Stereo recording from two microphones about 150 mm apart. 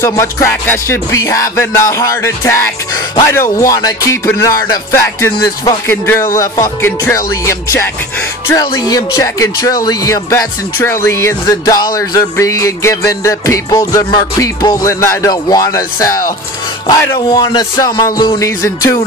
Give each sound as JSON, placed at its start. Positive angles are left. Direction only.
{"t": 0.0, "sound": "speech", "side_deg": 20}